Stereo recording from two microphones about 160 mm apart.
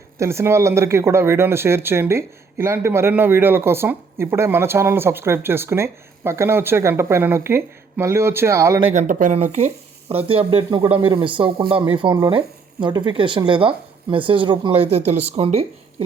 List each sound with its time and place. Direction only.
0.2 s speech: 15° right (ahead or behind)
8.9 s speech: 50° right (ahead or behind)